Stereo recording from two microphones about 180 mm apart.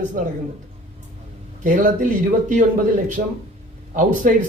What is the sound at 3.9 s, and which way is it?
Speech, 45° right (ahead or behind).